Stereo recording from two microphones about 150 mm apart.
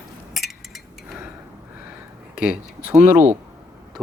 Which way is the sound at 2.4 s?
10° right (ahead or behind).